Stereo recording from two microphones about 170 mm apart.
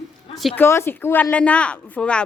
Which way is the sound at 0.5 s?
15° left (ahead or behind).